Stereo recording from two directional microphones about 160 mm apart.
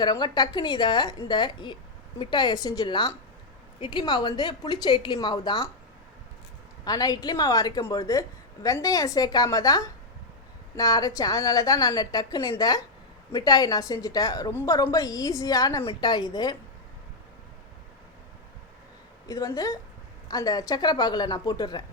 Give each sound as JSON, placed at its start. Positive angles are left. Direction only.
{"t": 0.0, "sound": "a woman's voice", "side_deg": 25}
{"t": 6.8, "sound": "a woman's voice", "side_deg": 25}
{"t": 19.3, "sound": "a woman's voice", "side_deg": 20}